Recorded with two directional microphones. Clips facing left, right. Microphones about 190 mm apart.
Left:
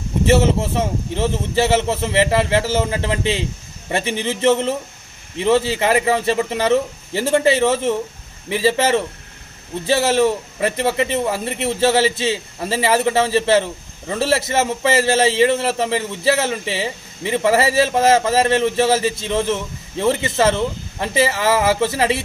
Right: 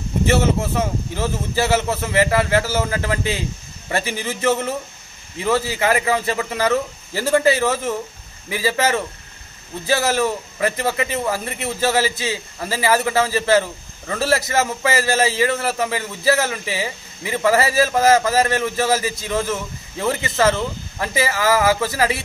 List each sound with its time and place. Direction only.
0.3 s a man's voice: 25° left (ahead or behind)